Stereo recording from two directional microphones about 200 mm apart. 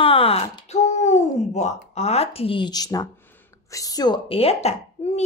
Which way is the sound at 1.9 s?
30° left (ahead or behind).